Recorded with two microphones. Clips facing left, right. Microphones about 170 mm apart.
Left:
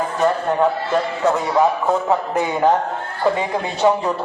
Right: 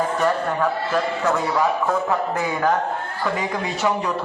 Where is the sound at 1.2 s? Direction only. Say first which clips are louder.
Left 6 dB; 25° left (ahead or behind).